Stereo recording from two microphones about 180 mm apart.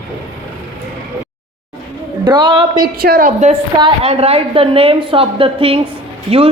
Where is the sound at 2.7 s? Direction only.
55° right (ahead or behind).